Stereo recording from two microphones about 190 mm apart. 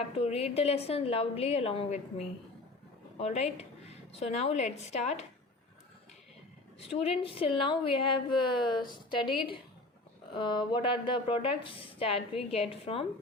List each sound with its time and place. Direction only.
0.0 s a woman's voice: 30° left (ahead or behind)
6.7 s speech: 30° left (ahead or behind)